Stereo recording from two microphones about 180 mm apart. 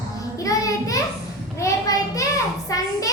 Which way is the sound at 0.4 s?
20° left (ahead or behind).